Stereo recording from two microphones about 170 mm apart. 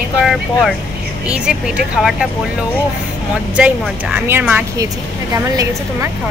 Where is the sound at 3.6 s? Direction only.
10° right (ahead or behind).